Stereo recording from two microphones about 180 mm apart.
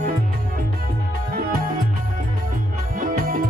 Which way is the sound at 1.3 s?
55° right (ahead or behind).